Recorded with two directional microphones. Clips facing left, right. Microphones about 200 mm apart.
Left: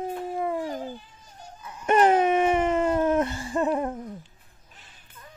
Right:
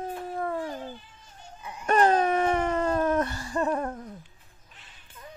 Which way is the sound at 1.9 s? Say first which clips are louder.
Left 2 dB; 20° left (ahead or behind).